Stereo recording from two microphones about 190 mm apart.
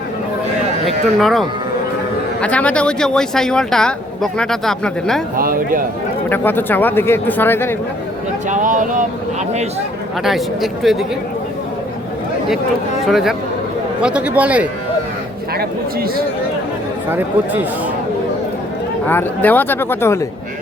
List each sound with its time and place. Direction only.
0.9 s speech: centre (ahead or behind)
5.4 s speech: 50° right (ahead or behind)
6.3 s speech: 10° left (ahead or behind)
8.4 s speech: 40° right (ahead or behind)
10.2 s speech: centre (ahead or behind)
13.1 s a man's voice: centre (ahead or behind)
15.5 s speech: 55° right (ahead or behind)
17.1 s a man's voice: 10° right (ahead or behind)
19.0 s speech: 10° left (ahead or behind)